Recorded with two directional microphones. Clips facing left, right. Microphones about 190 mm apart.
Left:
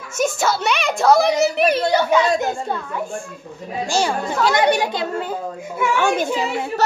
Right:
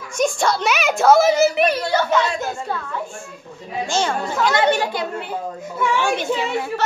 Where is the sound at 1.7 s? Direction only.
15° left (ahead or behind).